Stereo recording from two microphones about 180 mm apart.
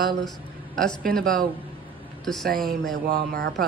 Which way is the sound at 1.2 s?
50° right (ahead or behind).